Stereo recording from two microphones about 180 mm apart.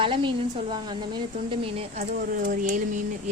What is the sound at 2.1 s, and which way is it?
Speech, 50° right (ahead or behind).